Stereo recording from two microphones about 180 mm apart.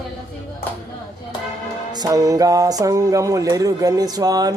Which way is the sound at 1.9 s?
20° right (ahead or behind).